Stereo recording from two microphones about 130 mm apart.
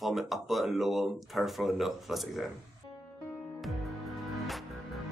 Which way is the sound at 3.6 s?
Centre (ahead or behind).